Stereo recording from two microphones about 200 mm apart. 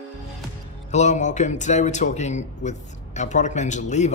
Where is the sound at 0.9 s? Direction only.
35° left (ahead or behind).